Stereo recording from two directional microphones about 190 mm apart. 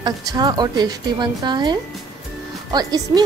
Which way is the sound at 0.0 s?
20° right (ahead or behind).